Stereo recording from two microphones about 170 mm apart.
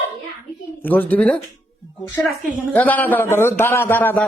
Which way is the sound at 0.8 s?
10° left (ahead or behind).